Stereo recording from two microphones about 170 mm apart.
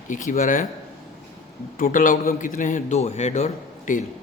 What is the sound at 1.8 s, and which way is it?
A man's voice, 50° left (ahead or behind).